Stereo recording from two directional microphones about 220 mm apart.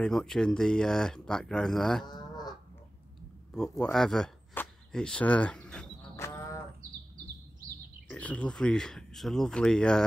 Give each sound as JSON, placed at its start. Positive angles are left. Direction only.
{"t": 0.0, "sound": "speech", "side_deg": 0}
{"t": 2.0, "sound": "cattle", "side_deg": 20}
{"t": 3.8, "sound": "a sound", "side_deg": 0}
{"t": 8.1, "sound": "speech", "side_deg": 5}